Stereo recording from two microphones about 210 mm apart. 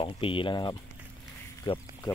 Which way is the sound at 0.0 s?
25° left (ahead or behind).